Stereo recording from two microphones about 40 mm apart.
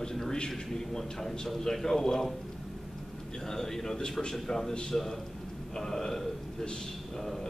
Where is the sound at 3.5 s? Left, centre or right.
Centre.